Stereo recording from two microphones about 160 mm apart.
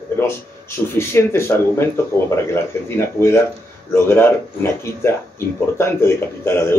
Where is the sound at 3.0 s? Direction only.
15° left (ahead or behind).